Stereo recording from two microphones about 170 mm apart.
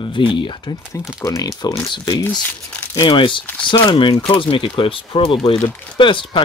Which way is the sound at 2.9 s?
25° left (ahead or behind).